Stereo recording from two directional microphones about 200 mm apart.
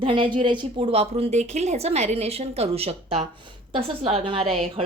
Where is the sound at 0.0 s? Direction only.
25° right (ahead or behind).